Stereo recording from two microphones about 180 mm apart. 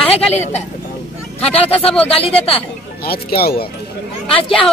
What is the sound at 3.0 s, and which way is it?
Speech, 60° left (ahead or behind).